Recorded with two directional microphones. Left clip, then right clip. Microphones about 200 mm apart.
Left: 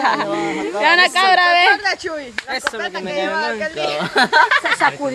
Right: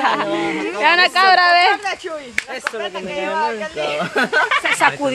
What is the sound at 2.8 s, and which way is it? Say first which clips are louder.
Speech: left 2 dB; 50° left (ahead or behind).